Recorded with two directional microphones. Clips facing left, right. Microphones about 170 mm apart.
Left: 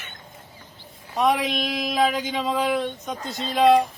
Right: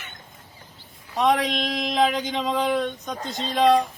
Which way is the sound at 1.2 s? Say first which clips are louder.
Even; 5° left (ahead or behind).